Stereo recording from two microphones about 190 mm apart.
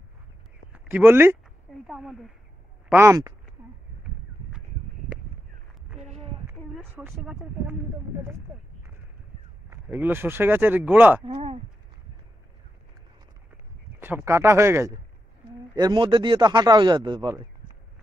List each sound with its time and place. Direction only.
0.7 s speech: 10° right (ahead or behind)
2.9 s speech: 15° right (ahead or behind)
5.9 s a sound: 35° right (ahead or behind)
7.1 s speech: 10° right (ahead or behind)
9.7 s speech: 10° right (ahead or behind)
11.2 s speech: 35° right (ahead or behind)
13.9 s speech: 10° right (ahead or behind)